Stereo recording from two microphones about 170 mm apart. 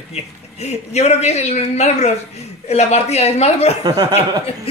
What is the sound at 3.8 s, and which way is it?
Speech, 25° right (ahead or behind).